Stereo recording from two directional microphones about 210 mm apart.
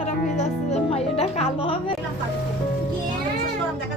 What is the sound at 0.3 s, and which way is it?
Music, 30° left (ahead or behind).